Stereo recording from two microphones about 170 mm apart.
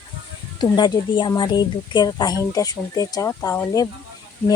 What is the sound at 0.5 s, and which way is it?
A woman's voice, 25° left (ahead or behind).